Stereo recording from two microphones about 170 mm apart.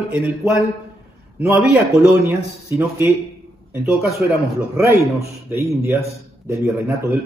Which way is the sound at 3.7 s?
Centre (ahead or behind).